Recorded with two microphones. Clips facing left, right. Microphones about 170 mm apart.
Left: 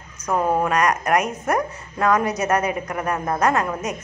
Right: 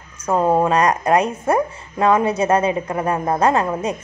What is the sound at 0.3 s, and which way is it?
A woman's voice, 25° right (ahead or behind).